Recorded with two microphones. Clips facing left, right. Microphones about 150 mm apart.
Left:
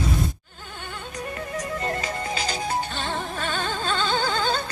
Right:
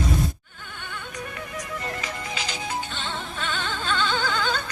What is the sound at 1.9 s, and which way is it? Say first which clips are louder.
Music: left 4 dB; 35° left (ahead or behind).